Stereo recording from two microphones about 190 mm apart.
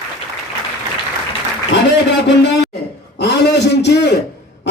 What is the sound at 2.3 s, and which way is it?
A man's voice, 65° left (ahead or behind).